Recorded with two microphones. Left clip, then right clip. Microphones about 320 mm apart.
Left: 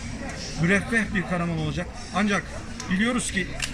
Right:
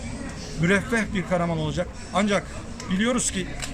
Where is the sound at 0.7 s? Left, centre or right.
Centre.